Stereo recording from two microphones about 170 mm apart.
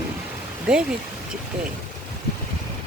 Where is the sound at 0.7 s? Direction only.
5° right (ahead or behind).